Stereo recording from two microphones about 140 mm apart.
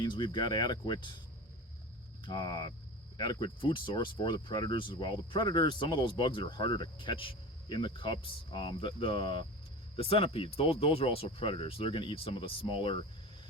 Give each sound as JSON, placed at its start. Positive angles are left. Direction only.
{"t": 0.0, "sound": "speech", "side_deg": 30}
{"t": 2.2, "sound": "speech", "side_deg": 30}